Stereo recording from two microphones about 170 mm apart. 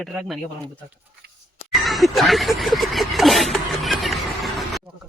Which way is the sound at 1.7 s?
Centre (ahead or behind).